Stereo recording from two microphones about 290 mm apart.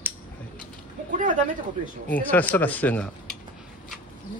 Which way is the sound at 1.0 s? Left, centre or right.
Right.